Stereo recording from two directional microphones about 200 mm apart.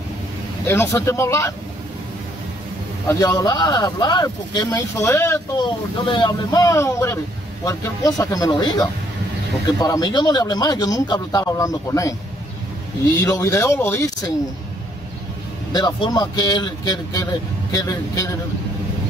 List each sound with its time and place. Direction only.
0.7 s speech: 15° left (ahead or behind)
3.1 s speech: 15° left (ahead or behind)
13.2 s speech: 15° left (ahead or behind)
15.7 s speech: 20° left (ahead or behind)